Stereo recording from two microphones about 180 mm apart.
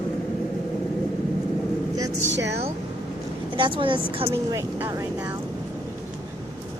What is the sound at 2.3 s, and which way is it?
Speech, 75° right (ahead or behind).